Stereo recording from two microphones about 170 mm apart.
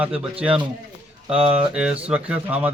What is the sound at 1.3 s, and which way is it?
Mantra, 5° right (ahead or behind).